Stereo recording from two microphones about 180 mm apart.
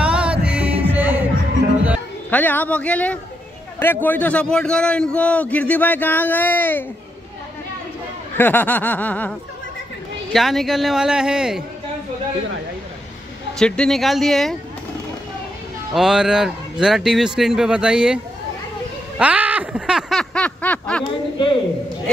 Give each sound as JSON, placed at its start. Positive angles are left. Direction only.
{"t": 0.0, "sound": "music", "side_deg": -5}
{"t": 2.3, "sound": "a man's voice", "side_deg": 10}
{"t": 8.4, "sound": "a man's voice", "side_deg": 10}
{"t": 10.3, "sound": "speech", "side_deg": 0}
{"t": 13.6, "sound": "speech", "side_deg": 5}
{"t": 15.9, "sound": "speech", "side_deg": -5}
{"t": 19.1, "sound": "a sound", "side_deg": -10}
{"t": 21.0, "sound": "speech", "side_deg": 30}